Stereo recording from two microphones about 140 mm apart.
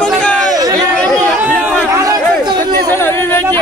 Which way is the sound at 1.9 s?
25° right (ahead or behind).